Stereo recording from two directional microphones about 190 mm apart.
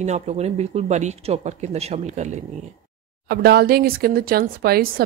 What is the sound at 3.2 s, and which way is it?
Speech, 55° right (ahead or behind).